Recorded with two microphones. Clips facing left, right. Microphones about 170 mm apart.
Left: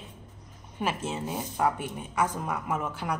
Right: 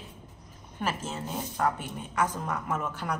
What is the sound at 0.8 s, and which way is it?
A woman's voice, 10° left (ahead or behind).